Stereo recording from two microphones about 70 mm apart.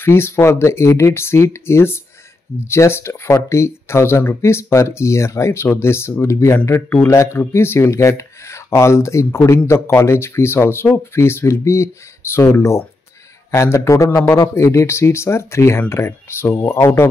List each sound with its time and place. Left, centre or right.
0.0 s speech: left